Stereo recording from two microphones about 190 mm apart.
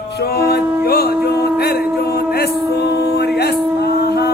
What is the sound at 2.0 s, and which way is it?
Music, 55° left (ahead or behind).